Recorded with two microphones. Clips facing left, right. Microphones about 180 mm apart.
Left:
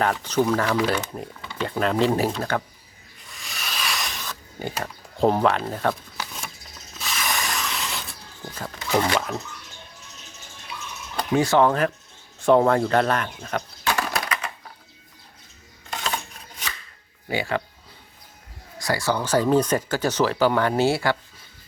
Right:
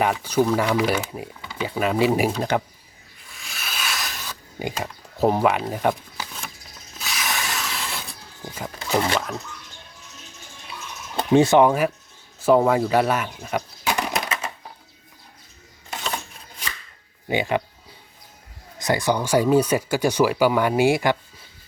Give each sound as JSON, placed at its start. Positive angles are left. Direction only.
{"t": 0.0, "sound": "speech", "side_deg": -10}
{"t": 3.2, "sound": "pig", "side_deg": 0}
{"t": 7.0, "sound": "spray", "side_deg": 0}
{"t": 8.5, "sound": "a sound", "side_deg": -10}
{"t": 11.2, "sound": "speech", "side_deg": -25}
{"t": 15.9, "sound": "a sound", "side_deg": 0}
{"t": 17.2, "sound": "speech", "side_deg": -20}
{"t": 18.8, "sound": "speech", "side_deg": -20}